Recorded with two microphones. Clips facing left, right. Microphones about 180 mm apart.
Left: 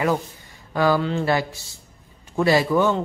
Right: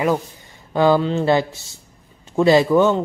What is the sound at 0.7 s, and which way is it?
Speech, 20° right (ahead or behind).